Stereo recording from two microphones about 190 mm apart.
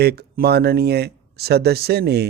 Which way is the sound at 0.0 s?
55° right (ahead or behind).